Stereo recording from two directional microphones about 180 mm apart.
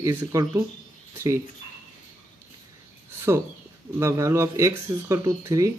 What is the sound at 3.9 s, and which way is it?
A man's voice, 15° right (ahead or behind).